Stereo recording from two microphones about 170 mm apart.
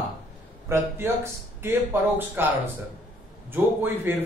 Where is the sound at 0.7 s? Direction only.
15° right (ahead or behind).